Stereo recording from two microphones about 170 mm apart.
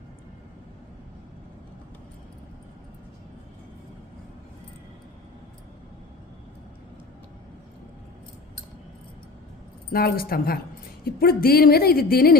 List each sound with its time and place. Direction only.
9.9 s a woman's voice: 65° left (ahead or behind)